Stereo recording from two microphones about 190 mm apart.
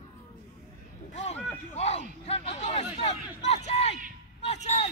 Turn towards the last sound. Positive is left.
turn(degrees=35)  # may be behind; listen again after turning